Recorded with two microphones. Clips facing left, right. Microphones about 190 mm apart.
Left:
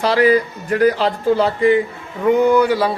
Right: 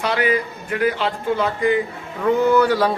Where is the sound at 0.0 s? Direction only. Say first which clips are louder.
Left 6 dB; 35° left (ahead or behind).